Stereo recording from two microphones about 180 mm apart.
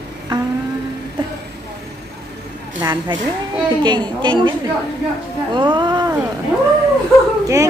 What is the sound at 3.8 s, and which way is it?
Speech, 25° right (ahead or behind).